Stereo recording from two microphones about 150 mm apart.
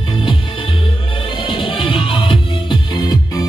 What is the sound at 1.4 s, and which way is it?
Music, 35° left (ahead or behind).